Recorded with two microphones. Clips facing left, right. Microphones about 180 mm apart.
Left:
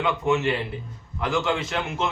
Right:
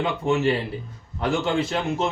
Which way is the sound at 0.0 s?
35° right (ahead or behind).